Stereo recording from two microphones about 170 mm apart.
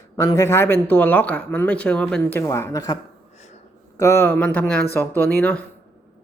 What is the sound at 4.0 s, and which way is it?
Speech, 15° left (ahead or behind).